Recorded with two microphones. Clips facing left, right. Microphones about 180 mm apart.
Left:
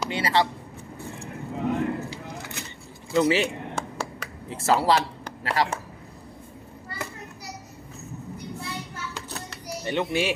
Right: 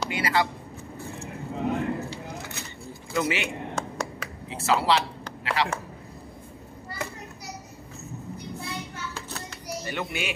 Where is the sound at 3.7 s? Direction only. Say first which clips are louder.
Right 1 dB; 5° left (ahead or behind).